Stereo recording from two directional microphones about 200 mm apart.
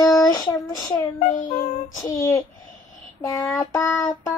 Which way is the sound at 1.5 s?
20° left (ahead or behind).